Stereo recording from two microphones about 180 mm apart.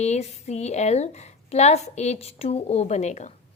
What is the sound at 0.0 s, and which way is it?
A woman's voice, 40° left (ahead or behind).